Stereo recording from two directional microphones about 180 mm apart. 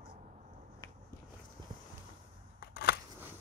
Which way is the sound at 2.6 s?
60° left (ahead or behind).